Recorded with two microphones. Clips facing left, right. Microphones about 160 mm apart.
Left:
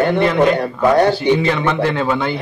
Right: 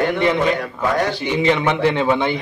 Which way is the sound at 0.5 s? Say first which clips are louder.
Left 7 dB; 35° left (ahead or behind).